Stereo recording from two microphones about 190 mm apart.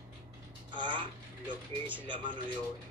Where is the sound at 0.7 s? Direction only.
25° right (ahead or behind).